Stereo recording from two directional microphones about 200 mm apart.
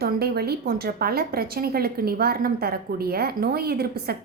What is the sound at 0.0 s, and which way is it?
A woman's voice, 50° right (ahead or behind).